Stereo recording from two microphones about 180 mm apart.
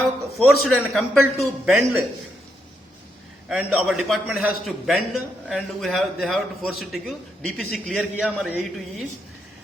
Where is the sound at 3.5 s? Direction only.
5° right (ahead or behind).